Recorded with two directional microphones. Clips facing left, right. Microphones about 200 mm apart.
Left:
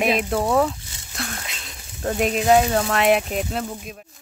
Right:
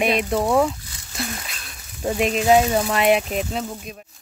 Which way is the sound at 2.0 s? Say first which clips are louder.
Right 1 dB; centre (ahead or behind).